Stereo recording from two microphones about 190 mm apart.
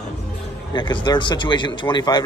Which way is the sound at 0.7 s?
25° left (ahead or behind).